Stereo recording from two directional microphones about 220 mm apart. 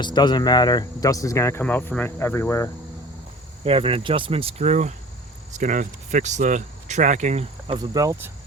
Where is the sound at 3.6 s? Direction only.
25° right (ahead or behind).